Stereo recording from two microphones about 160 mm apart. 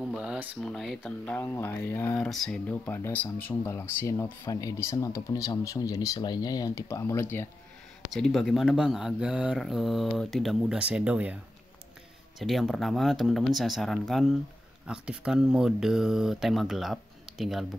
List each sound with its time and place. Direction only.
0.0 s speech: 5° right (ahead or behind)
1.2 s speech: 15° left (ahead or behind)
2.2 s speech: centre (ahead or behind)
8.1 s speech: centre (ahead or behind)
12.4 s speech: centre (ahead or behind)